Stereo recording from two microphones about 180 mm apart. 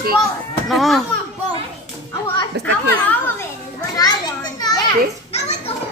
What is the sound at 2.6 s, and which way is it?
Speech, 70° right (ahead or behind).